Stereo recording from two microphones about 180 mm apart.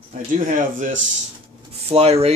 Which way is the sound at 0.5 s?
45° right (ahead or behind).